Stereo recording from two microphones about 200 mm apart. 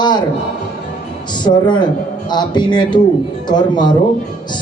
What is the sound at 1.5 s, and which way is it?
A man's voice, 25° left (ahead or behind).